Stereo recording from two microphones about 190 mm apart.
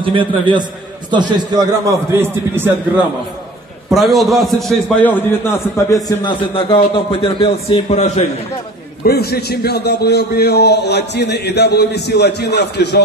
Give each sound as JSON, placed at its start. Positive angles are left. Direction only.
{"t": 0.0, "sound": "a man's voice", "side_deg": -25}
{"t": 3.9, "sound": "a man's voice", "side_deg": 0}
{"t": 5.9, "sound": "a man's voice", "side_deg": 20}
{"t": 9.0, "sound": "a man's voice", "side_deg": 55}